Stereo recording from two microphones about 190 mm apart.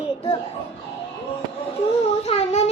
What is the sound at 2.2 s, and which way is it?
Speech, 35° left (ahead or behind).